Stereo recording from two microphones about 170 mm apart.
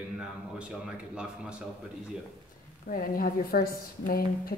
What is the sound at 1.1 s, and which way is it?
Speech, 5° right (ahead or behind).